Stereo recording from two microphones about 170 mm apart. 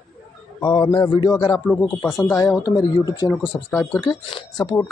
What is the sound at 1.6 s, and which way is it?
Speech, 15° left (ahead or behind).